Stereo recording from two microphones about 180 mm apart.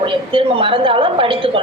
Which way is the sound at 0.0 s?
30° right (ahead or behind).